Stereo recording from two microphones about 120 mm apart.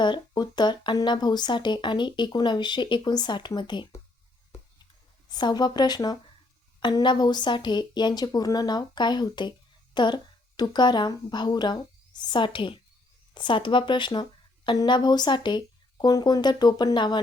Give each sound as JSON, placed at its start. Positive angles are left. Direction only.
{"t": 0.0, "sound": "speech", "side_deg": 40}
{"t": 5.3, "sound": "speech", "side_deg": 35}